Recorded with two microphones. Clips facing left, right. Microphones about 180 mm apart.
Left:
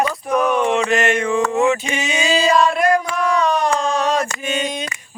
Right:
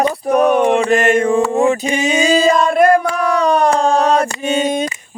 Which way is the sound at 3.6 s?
35° right (ahead or behind).